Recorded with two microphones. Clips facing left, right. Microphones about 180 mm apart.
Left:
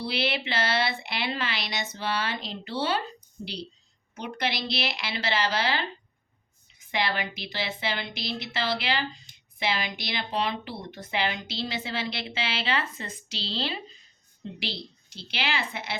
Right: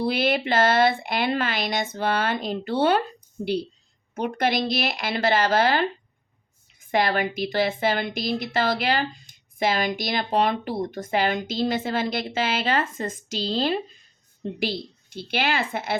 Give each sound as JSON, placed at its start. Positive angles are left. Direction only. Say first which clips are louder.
{"t": 0.0, "sound": "a woman's voice", "louder": "right 7 dB", "side_deg": -50}